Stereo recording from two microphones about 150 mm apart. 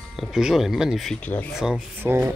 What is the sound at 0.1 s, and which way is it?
Speech, 5° right (ahead or behind).